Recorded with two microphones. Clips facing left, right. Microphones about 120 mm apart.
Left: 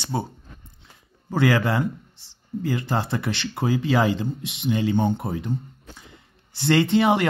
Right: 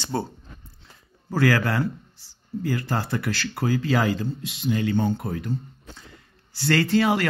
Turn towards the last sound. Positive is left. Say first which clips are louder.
# left 2 dB
turn(degrees=20)  # may be behind; listen again after turning